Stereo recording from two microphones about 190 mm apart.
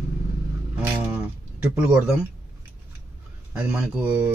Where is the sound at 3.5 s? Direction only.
10° right (ahead or behind).